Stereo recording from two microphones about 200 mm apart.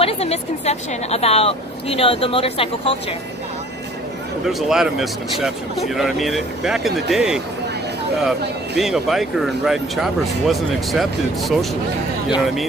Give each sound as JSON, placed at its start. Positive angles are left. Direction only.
{"t": 0.0, "sound": "speech", "side_deg": 30}
{"t": 4.5, "sound": "speech", "side_deg": 0}